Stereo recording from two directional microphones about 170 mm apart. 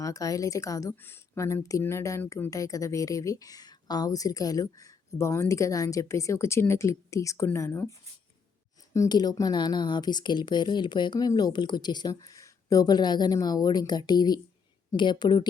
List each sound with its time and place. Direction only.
0.0 s a woman's voice: 20° left (ahead or behind)
8.9 s a woman's voice: 20° left (ahead or behind)